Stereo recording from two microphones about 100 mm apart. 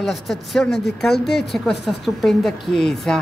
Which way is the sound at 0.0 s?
Centre (ahead or behind).